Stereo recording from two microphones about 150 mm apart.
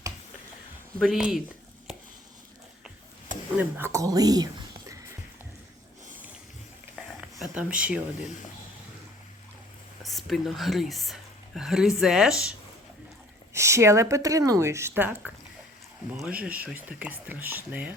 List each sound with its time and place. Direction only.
0.9 s speech: centre (ahead or behind)
3.6 s speech: 15° right (ahead or behind)
7.2 s speech: 5° right (ahead or behind)
10.0 s speech: centre (ahead or behind)
13.5 s speech: 20° right (ahead or behind)
16.4 s speech: 10° right (ahead or behind)